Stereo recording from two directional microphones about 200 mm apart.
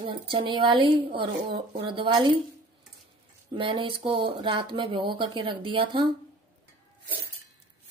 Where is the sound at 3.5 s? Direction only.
25° right (ahead or behind).